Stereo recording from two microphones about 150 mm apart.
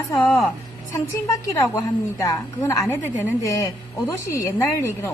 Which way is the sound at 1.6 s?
20° left (ahead or behind).